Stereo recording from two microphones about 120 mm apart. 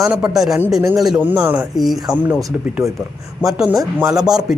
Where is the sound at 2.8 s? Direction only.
25° right (ahead or behind).